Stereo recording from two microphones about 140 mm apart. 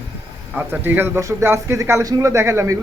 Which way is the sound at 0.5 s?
15° right (ahead or behind).